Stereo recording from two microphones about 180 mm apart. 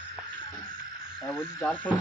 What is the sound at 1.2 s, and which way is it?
Speech, centre (ahead or behind).